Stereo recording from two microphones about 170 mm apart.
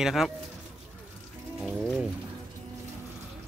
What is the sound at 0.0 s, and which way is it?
Speech, centre (ahead or behind).